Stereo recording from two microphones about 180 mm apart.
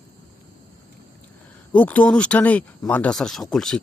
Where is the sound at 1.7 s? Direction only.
10° left (ahead or behind).